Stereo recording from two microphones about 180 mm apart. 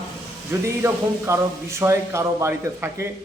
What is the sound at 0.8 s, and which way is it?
A man's voice, 15° right (ahead or behind).